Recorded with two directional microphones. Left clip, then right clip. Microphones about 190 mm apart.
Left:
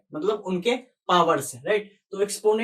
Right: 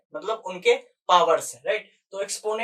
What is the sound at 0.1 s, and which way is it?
Speech, 15° right (ahead or behind).